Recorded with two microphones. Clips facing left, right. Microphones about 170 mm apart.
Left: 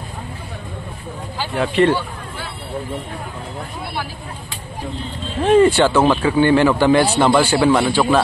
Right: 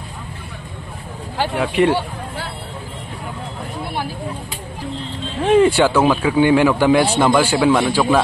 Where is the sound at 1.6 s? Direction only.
5° right (ahead or behind).